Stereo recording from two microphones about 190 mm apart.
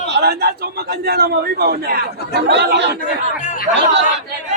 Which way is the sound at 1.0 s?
55° right (ahead or behind).